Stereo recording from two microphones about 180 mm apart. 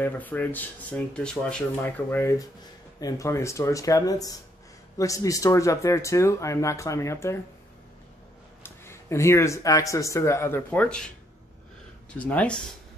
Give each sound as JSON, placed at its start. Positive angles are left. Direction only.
{"t": 0.0, "sound": "speech", "side_deg": 10}
{"t": 8.6, "sound": "speech", "side_deg": 15}
{"t": 12.1, "sound": "speech", "side_deg": 10}